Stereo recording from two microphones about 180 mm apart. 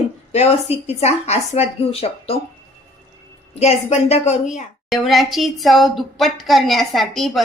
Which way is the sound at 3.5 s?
35° left (ahead or behind).